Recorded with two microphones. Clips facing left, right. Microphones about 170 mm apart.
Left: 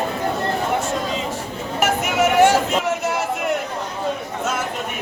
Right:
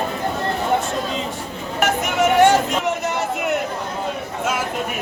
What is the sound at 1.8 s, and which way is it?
Speech, 5° left (ahead or behind).